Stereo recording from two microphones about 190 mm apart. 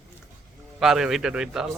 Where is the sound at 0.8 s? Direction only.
Centre (ahead or behind).